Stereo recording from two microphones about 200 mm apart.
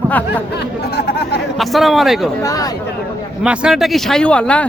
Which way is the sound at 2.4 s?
15° left (ahead or behind).